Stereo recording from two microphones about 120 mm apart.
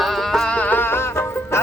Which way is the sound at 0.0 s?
Centre (ahead or behind).